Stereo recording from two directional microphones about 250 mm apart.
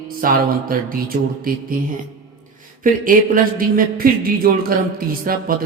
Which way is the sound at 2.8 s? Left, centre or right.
Right.